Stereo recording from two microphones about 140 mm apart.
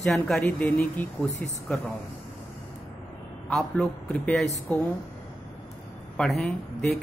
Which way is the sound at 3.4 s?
10° left (ahead or behind).